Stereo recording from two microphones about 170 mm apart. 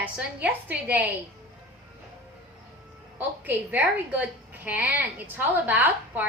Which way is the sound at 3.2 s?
10° right (ahead or behind).